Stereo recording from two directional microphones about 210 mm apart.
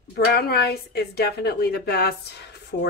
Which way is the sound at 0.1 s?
50° left (ahead or behind).